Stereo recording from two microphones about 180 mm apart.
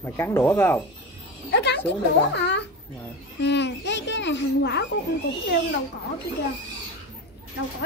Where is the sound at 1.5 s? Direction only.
70° left (ahead or behind).